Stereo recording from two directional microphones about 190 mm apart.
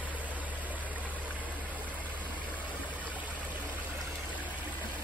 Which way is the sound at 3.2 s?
10° right (ahead or behind).